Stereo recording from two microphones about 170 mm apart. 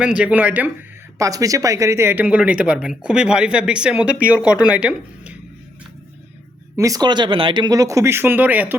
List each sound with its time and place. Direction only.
0.0 s a man's voice: 5° right (ahead or behind)
6.7 s speech: 20° right (ahead or behind)